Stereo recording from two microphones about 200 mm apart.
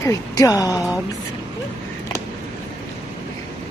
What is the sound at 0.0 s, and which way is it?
Speech, 15° left (ahead or behind).